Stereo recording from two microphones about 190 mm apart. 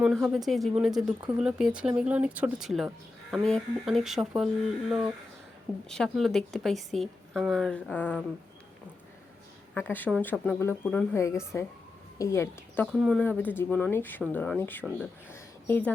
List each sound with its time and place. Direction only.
0.0 s speech: centre (ahead or behind)
5.9 s speech: centre (ahead or behind)
9.7 s speech: 10° left (ahead or behind)